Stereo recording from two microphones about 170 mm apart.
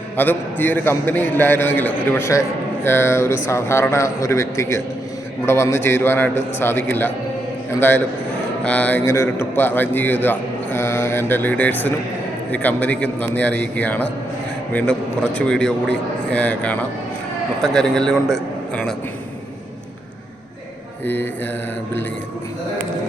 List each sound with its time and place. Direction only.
0.2 s a man's voice: 10° left (ahead or behind)
21.0 s a man's voice: 10° left (ahead or behind)